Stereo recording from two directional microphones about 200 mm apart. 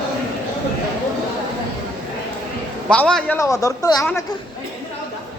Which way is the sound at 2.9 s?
5° left (ahead or behind).